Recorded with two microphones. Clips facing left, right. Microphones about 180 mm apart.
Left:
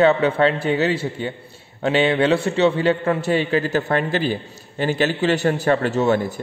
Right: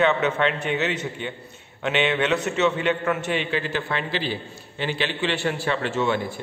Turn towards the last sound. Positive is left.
turn(degrees=40)  # may be behind; listen again after turning